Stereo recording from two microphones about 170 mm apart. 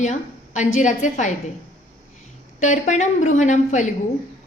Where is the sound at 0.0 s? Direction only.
45° left (ahead or behind).